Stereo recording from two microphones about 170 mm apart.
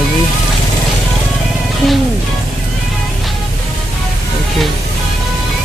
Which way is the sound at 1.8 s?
Centre (ahead or behind).